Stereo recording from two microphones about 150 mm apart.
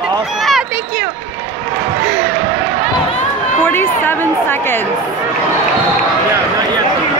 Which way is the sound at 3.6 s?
15° left (ahead or behind).